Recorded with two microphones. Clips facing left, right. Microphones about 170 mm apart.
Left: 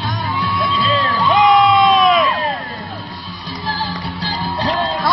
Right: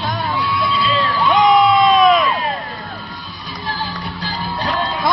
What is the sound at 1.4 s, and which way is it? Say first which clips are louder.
Crowd: even; centre (ahead or behind).